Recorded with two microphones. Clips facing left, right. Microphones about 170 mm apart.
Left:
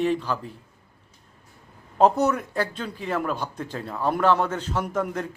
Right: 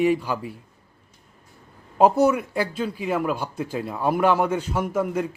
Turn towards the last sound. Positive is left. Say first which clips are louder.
# right 3 dB
turn(degrees=-10)  # may be behind; listen again after turning